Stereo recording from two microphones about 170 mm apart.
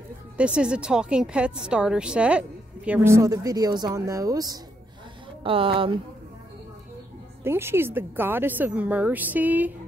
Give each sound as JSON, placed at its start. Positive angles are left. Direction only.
{"t": 0.4, "sound": "a woman's voice", "side_deg": -5}
{"t": 5.4, "sound": "speech", "side_deg": -30}
{"t": 7.4, "sound": "a woman's voice", "side_deg": -15}